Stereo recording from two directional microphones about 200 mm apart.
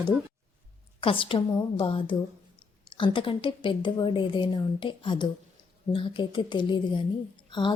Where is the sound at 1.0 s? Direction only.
25° left (ahead or behind).